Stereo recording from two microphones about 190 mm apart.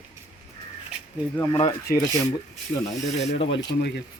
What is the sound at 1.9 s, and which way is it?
Speech, 50° left (ahead or behind).